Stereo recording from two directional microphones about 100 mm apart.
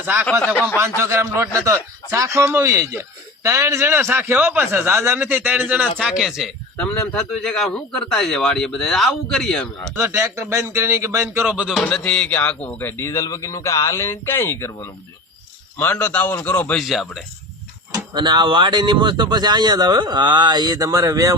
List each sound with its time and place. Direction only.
0.0 s speech: 20° right (ahead or behind)
0.4 s speech: 15° left (ahead or behind)
0.8 s a man's voice: 25° right (ahead or behind); by 9.6 s 5° left (ahead or behind)
9.9 s speech: 25° right (ahead or behind)
11.4 s music: 10° right (ahead or behind)
11.8 s a man's voice: 10° left (ahead or behind); by 14.8 s 25° left (ahead or behind)
16.0 s speech: 15° left (ahead or behind)
16.7 s a man's voice: centre (ahead or behind)
17.9 s speech: 45° right (ahead or behind)